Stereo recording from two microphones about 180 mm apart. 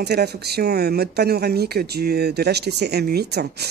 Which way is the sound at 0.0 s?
65° right (ahead or behind).